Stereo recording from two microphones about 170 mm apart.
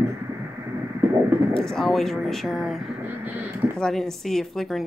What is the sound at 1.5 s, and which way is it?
A woman's voice, centre (ahead or behind).